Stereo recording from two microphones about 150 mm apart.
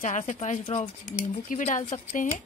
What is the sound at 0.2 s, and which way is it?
Speech, 50° left (ahead or behind).